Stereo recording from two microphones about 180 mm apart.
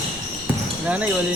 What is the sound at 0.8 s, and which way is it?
Speech, 10° right (ahead or behind).